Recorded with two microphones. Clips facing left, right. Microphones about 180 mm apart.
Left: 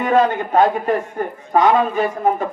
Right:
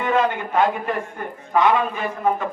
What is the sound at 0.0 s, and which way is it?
Speech, 40° left (ahead or behind).